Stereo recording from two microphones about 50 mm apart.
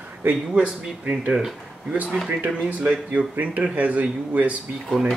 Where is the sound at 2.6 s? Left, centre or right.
Right.